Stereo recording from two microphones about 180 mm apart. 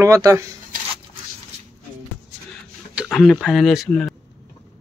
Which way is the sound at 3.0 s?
Centre (ahead or behind).